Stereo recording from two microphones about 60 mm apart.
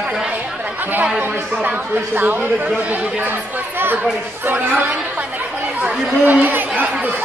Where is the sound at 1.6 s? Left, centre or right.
Right.